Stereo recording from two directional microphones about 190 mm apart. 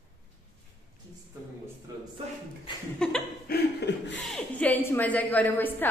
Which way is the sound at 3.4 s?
60° left (ahead or behind).